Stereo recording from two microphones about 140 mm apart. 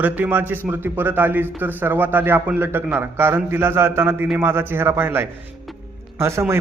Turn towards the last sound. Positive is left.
turn(degrees=-20)  # may be behind; listen again after turning